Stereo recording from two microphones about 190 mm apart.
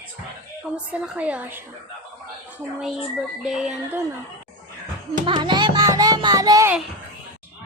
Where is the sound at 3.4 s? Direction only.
5° right (ahead or behind).